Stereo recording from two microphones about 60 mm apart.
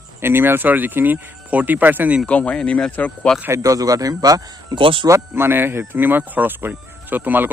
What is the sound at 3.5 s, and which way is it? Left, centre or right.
Speech, right.